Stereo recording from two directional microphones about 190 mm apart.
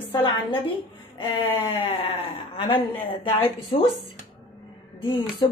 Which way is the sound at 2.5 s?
30° left (ahead or behind).